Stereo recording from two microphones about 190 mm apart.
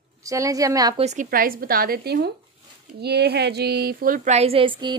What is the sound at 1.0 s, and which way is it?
Speech, 35° right (ahead or behind).